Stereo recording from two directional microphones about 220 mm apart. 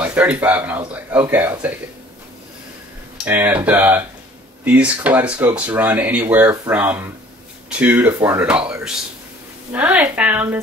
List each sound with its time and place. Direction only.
0.0 s speech: 5° right (ahead or behind)
3.3 s speech: 10° right (ahead or behind)